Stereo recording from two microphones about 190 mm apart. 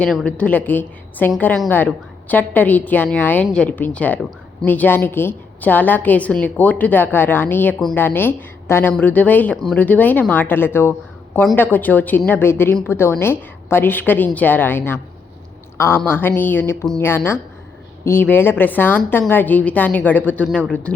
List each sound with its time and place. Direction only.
0.0 s a woman's voice: 5° left (ahead or behind)
16.0 s a woman's voice: 10° left (ahead or behind)